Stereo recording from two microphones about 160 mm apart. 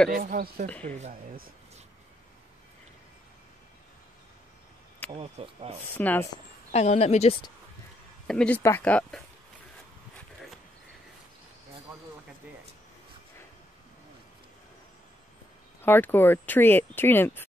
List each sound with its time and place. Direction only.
0.2 s speech: 60° right (ahead or behind)
0.8 s speech: 45° right (ahead or behind)
5.1 s speech: 35° right (ahead or behind)
5.9 s speech: 10° left (ahead or behind)
6.7 s a woman's voice: 45° left (ahead or behind)
8.3 s speech: 5° left (ahead or behind)
15.8 s speech: 10° left (ahead or behind)